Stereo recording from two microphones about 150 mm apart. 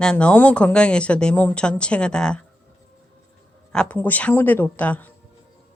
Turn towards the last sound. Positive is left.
turn(degrees=10)  # may be behind; listen again after turning